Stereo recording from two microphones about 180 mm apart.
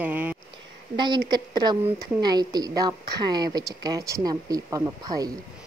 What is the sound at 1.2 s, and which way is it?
A woman's voice, 25° right (ahead or behind).